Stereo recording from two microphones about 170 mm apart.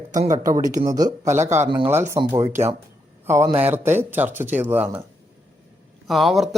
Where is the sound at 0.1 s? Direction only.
45° right (ahead or behind).